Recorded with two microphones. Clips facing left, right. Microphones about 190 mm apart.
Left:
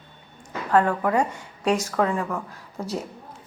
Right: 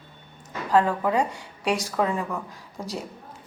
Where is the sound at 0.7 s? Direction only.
20° right (ahead or behind).